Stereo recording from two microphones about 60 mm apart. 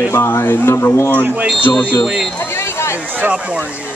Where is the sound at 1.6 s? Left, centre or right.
Left.